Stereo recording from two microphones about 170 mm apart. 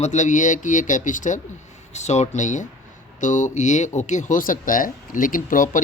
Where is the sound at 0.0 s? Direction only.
45° left (ahead or behind).